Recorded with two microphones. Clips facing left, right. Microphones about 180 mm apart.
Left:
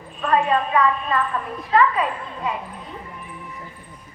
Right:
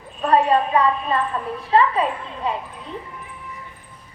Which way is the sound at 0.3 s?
35° right (ahead or behind).